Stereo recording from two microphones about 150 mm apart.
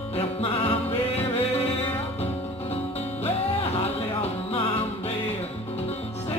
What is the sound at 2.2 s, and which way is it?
Music, 45° left (ahead or behind).